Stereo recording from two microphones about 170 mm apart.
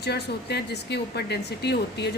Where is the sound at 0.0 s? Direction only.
75° left (ahead or behind).